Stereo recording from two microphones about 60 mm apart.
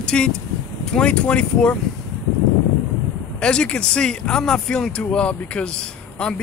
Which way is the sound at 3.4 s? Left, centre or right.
Centre.